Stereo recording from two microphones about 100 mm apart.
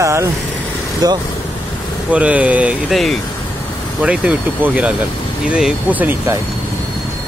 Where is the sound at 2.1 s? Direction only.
10° right (ahead or behind).